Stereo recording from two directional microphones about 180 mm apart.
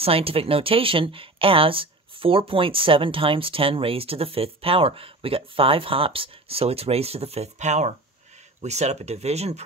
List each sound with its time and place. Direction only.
0.0 s speech: 30° right (ahead or behind)